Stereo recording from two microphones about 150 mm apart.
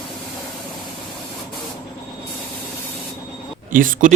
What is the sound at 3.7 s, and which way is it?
Speech, 60° right (ahead or behind).